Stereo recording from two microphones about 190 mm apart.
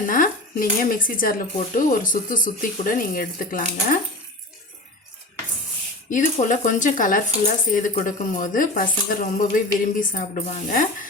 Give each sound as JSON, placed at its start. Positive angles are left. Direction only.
{"t": 0.0, "sound": "speech", "side_deg": 45}
{"t": 6.1, "sound": "speech", "side_deg": 40}